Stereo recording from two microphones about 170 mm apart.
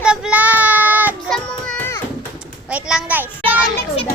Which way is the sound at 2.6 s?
5° right (ahead or behind).